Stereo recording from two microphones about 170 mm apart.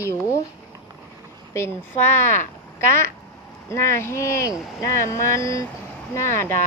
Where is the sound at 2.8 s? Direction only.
15° left (ahead or behind).